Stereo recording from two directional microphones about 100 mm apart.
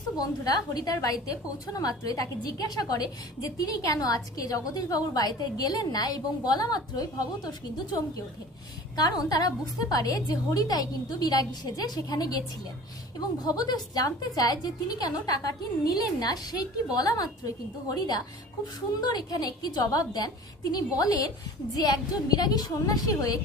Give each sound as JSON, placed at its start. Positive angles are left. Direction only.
{"t": 0.2, "sound": "a woman's voice", "side_deg": 40}
{"t": 9.0, "sound": "a woman's voice", "side_deg": 40}